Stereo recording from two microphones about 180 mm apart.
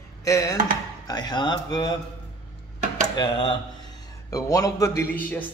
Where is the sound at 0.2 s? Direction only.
20° left (ahead or behind).